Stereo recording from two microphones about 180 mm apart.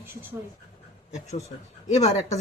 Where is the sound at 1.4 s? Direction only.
40° left (ahead or behind).